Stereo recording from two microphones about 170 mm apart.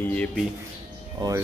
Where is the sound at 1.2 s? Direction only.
25° right (ahead or behind).